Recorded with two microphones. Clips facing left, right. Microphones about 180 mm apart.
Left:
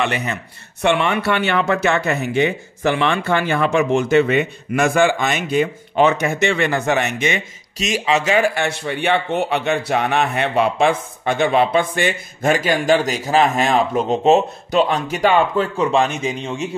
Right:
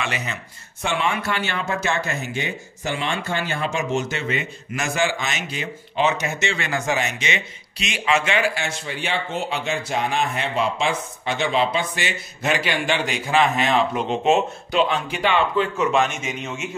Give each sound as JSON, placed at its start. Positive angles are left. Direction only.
{"t": 0.0, "sound": "speech", "side_deg": 55}
{"t": 8.5, "sound": "speech", "side_deg": 60}